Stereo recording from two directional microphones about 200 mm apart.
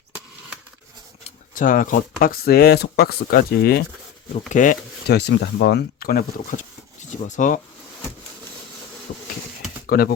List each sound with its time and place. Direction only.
1.5 s speech: 40° left (ahead or behind)
4.4 s speech: 40° left (ahead or behind)
9.1 s bee: 60° left (ahead or behind)
9.8 s a sound: 50° left (ahead or behind)